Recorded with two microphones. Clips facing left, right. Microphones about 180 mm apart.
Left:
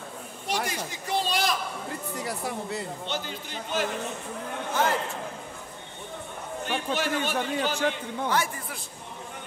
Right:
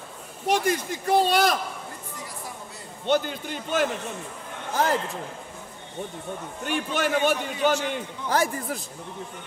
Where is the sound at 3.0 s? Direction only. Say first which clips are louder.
Right 9 dB; 50° right (ahead or behind).